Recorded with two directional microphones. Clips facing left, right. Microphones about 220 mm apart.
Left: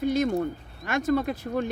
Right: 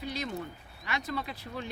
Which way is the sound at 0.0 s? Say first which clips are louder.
Left 12 dB; 50° left (ahead or behind).